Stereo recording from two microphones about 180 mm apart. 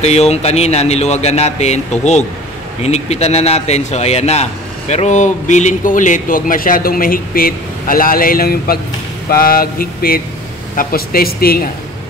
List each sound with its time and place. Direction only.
0.0 s a man's voice: 35° left (ahead or behind); by 11.6 s 55° left (ahead or behind)